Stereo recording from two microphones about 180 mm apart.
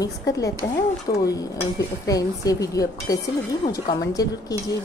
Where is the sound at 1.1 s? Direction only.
55° left (ahead or behind).